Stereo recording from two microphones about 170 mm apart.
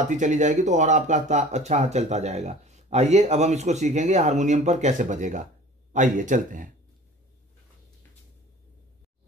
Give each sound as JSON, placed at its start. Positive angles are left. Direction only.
{"t": 0.1, "sound": "speech", "side_deg": -45}